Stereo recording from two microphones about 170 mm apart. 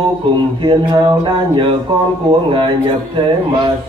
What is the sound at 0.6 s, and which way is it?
Speech, 30° right (ahead or behind).